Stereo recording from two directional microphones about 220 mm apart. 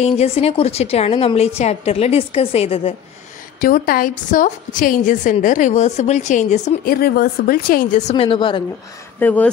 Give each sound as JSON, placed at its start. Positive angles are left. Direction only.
{"t": 0.0, "sound": "a woman's voice", "side_deg": 30}
{"t": 3.6, "sound": "a woman's voice", "side_deg": 40}
{"t": 9.2, "sound": "speech", "side_deg": 5}